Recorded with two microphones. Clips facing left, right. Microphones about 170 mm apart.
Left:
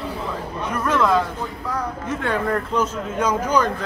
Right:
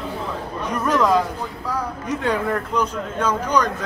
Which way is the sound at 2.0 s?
15° right (ahead or behind).